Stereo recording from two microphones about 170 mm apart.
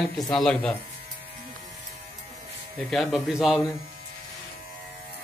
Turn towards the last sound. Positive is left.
turn(degrees=-5)  # may be behind; listen again after turning